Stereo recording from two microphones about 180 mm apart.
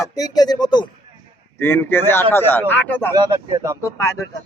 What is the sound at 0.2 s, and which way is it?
Speech, 20° left (ahead or behind).